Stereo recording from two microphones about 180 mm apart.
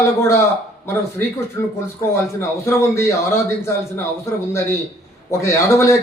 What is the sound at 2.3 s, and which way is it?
Speech, 15° left (ahead or behind).